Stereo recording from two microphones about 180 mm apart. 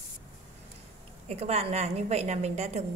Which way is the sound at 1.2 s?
35° right (ahead or behind).